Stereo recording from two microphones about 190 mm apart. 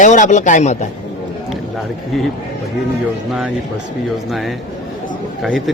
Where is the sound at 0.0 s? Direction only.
40° left (ahead or behind).